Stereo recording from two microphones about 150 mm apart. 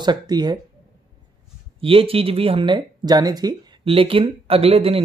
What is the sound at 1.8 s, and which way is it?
Speech, 40° right (ahead or behind).